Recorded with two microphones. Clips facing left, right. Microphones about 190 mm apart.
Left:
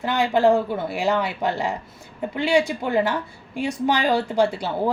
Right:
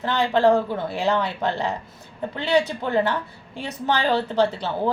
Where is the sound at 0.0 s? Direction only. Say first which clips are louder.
Even; 10° left (ahead or behind).